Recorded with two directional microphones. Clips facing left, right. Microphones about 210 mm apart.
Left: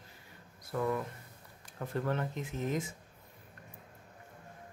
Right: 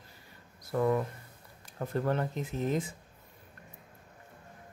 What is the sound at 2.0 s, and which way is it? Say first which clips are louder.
Speech: right 3 dB; 35° right (ahead or behind).